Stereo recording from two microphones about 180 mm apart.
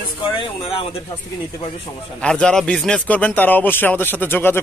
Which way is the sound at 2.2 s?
5° left (ahead or behind).